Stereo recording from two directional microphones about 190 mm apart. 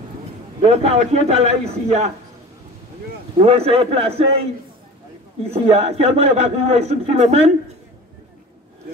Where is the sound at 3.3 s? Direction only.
30° right (ahead or behind).